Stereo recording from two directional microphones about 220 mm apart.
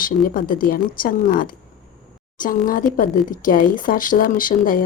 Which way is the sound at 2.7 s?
40° left (ahead or behind).